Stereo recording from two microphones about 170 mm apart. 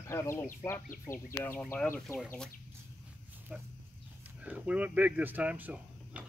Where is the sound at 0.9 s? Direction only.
55° left (ahead or behind).